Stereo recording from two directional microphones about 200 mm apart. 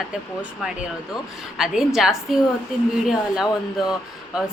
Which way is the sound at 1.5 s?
5° right (ahead or behind).